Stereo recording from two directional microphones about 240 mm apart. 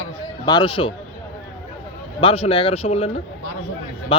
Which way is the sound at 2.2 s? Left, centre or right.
Left.